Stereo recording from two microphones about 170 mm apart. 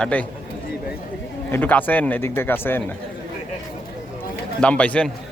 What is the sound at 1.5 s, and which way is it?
Speech, 10° left (ahead or behind).